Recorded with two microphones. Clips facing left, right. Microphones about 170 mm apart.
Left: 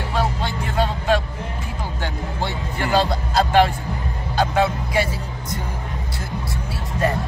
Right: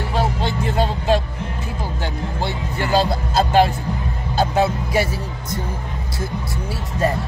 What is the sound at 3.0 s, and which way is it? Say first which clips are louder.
Music: even; 20° right (ahead or behind).